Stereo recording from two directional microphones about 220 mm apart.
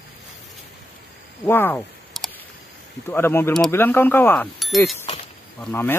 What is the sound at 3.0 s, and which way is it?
Speech, 10° left (ahead or behind).